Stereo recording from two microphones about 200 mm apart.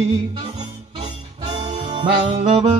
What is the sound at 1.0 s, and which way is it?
Music, 25° right (ahead or behind).